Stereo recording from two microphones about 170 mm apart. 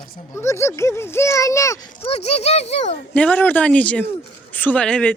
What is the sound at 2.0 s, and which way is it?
Speech, 35° left (ahead or behind).